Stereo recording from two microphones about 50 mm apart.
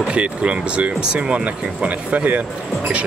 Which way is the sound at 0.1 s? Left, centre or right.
Right.